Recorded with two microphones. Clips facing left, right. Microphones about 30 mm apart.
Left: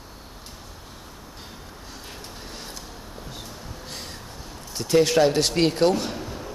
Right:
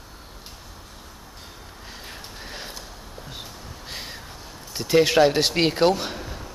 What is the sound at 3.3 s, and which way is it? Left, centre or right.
Snort, centre.